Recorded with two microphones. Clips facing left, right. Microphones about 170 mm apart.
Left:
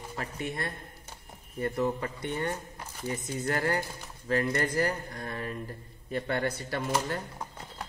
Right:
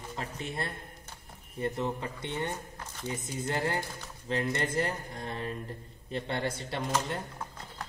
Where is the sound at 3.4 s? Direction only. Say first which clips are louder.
Left 2 dB; 25° right (ahead or behind).